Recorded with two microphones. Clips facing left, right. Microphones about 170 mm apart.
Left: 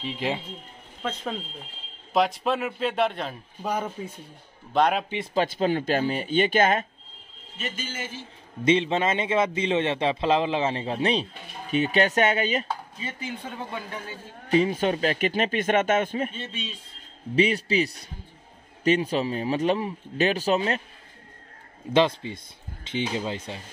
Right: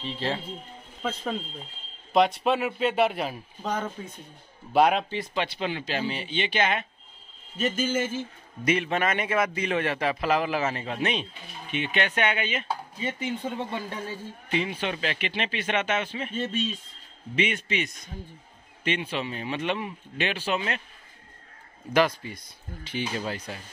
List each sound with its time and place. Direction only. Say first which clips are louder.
0.0 s speech: left 1 dB; 15° left (ahead or behind)
2.1 s speech: right 1 dB; centre (ahead or behind)
3.6 s speech: left 2 dB; 10° left (ahead or behind)
4.7 s speech: right 1 dB; 5° right (ahead or behind)
5.3 s speech: left 8 dB; 40° left (ahead or behind)
7.5 s speech: right 9 dB; 45° right (ahead or behind)
8.6 s a man's voice: left 3 dB; 25° left (ahead or behind); by 12.6 s 40° left (ahead or behind)
13.0 s speech: right 4 dB; 25° right (ahead or behind)
14.5 s speech: left 7 dB; 40° left (ahead or behind)
16.3 s speech: right 7 dB; 45° right (ahead or behind)
17.4 s speech: left 6 dB; 35° left (ahead or behind)
21.9 s a man's voice: left 2 dB; 25° left (ahead or behind)